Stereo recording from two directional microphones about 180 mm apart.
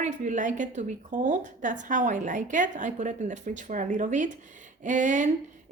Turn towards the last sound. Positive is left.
turn(degrees=-45)  # may be behind; listen again after turning